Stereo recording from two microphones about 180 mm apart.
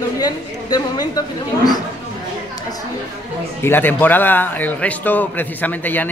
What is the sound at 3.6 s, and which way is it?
A man's voice, 10° left (ahead or behind).